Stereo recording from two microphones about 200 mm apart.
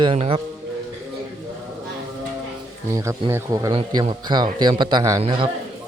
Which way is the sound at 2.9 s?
15° right (ahead or behind).